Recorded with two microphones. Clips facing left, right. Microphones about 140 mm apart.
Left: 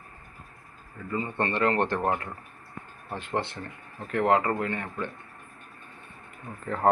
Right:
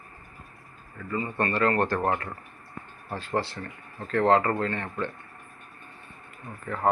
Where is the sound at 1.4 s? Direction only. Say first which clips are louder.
Right 1 dB; 25° left (ahead or behind).